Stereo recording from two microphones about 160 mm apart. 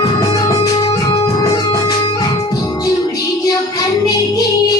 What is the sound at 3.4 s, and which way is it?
Music, 25° left (ahead or behind).